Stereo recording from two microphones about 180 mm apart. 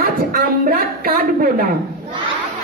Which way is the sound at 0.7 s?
55° right (ahead or behind).